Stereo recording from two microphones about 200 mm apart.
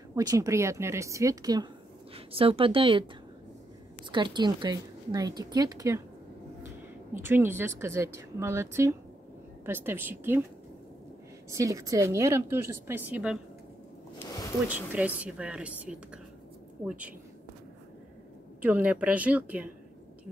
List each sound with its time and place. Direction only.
0.1 s a woman's voice: 20° right (ahead or behind)
4.1 s a woman's voice: 25° right (ahead or behind)
7.2 s a woman's voice: 10° right (ahead or behind)
11.5 s a woman's voice: 15° right (ahead or behind)
14.1 s a sound: 20° left (ahead or behind)
14.7 s a woman's voice: 10° right (ahead or behind)
18.6 s a woman's voice: 5° right (ahead or behind)